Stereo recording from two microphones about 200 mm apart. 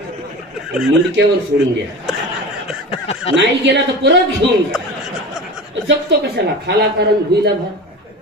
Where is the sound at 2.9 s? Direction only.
30° left (ahead or behind).